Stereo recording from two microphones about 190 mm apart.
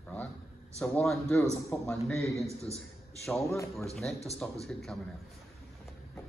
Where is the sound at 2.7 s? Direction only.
30° left (ahead or behind).